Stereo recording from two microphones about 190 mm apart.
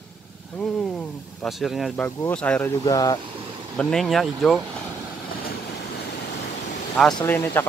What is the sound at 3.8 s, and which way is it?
Speech, centre (ahead or behind).